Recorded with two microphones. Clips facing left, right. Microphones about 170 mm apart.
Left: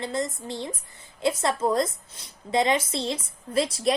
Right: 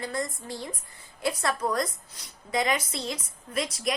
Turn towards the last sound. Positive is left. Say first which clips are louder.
# left 6 dB
turn(degrees=30)  # may be behind; listen again after turning